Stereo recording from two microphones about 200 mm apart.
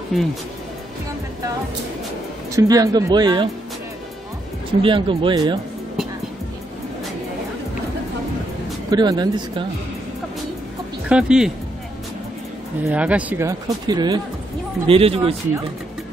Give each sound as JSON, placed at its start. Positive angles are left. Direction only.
{"t": 0.1, "sound": "speech", "side_deg": 0}
{"t": 2.5, "sound": "speech", "side_deg": -15}
{"t": 4.8, "sound": "speech", "side_deg": -25}
{"t": 8.9, "sound": "speech", "side_deg": -20}
{"t": 11.1, "sound": "speech", "side_deg": -5}
{"t": 12.8, "sound": "speech", "side_deg": -5}